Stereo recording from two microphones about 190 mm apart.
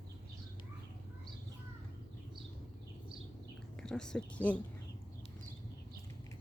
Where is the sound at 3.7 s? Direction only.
5° left (ahead or behind).